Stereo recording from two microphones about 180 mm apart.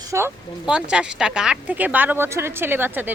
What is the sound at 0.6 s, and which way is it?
A woman's voice, 5° right (ahead or behind).